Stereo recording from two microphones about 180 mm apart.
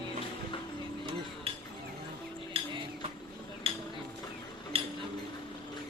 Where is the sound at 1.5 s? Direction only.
30° right (ahead or behind).